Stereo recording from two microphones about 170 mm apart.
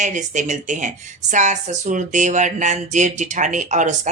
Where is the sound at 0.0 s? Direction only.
45° right (ahead or behind).